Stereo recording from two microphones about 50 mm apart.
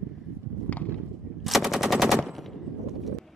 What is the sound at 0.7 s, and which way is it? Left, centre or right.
Clip-clop, left.